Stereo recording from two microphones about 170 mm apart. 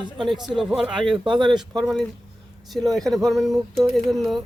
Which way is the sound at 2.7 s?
Centre (ahead or behind).